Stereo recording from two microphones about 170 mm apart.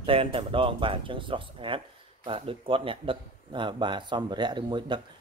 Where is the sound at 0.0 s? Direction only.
35° right (ahead or behind).